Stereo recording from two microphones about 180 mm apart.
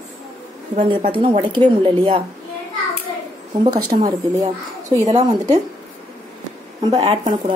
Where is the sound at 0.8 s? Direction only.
30° right (ahead or behind).